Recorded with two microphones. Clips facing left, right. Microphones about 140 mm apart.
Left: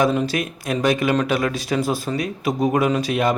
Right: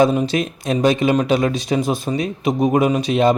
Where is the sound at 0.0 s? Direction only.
20° right (ahead or behind).